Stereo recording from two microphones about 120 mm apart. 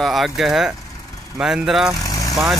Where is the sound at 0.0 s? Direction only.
Centre (ahead or behind).